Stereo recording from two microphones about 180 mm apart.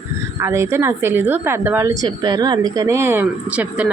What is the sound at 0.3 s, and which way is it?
A woman's voice, 15° right (ahead or behind).